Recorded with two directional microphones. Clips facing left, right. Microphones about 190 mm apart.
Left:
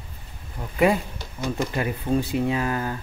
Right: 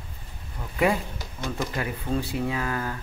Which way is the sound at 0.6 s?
20° left (ahead or behind).